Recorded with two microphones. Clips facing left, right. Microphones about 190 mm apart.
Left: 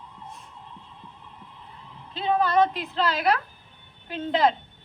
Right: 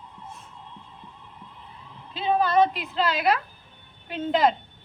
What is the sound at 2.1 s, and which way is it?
A woman's voice, 5° right (ahead or behind).